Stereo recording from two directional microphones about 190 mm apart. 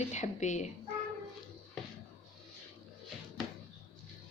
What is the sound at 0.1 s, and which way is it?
Speech, 40° left (ahead or behind).